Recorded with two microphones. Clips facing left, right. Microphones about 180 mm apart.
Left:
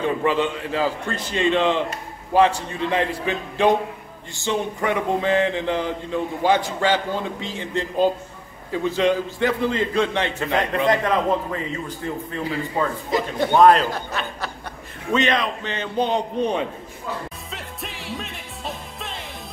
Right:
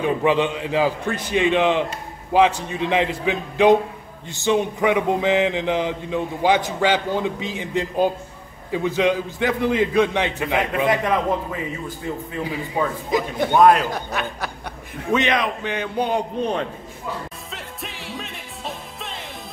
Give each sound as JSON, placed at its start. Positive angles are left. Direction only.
{"t": 0.0, "sound": "a man's voice", "side_deg": -15}
{"t": 13.8, "sound": "a man's voice", "side_deg": -15}
{"t": 17.5, "sound": "music", "side_deg": 0}